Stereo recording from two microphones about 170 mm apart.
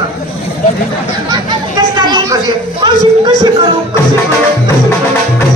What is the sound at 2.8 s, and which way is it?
Speech, 25° right (ahead or behind).